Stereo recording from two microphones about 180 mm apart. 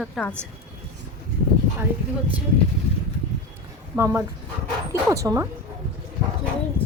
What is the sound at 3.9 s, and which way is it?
A woman's voice, 15° right (ahead or behind).